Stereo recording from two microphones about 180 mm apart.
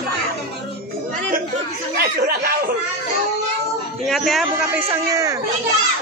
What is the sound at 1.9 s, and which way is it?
Snicker, 60° right (ahead or behind).